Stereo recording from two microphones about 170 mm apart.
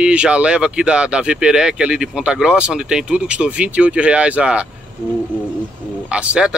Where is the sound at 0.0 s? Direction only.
5° right (ahead or behind).